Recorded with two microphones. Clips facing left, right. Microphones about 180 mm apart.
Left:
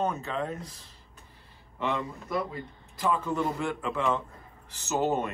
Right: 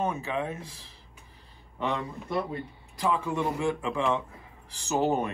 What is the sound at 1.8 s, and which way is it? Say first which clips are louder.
Speech: even; 15° right (ahead or behind).